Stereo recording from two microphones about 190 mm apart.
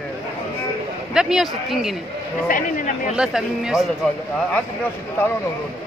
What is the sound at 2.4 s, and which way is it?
Speech, 45° left (ahead or behind).